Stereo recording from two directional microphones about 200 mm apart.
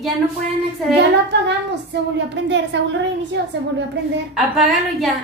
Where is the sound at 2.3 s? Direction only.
60° right (ahead or behind).